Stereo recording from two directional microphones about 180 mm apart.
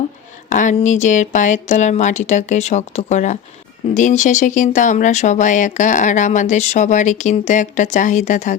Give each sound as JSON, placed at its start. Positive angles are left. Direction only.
{"t": 0.5, "sound": "speech", "side_deg": 45}